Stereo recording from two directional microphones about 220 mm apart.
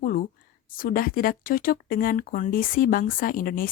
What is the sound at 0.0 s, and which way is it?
A woman's voice, 40° left (ahead or behind).